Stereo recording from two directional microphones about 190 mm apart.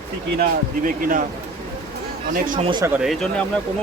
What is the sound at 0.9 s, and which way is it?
Speech, 45° right (ahead or behind).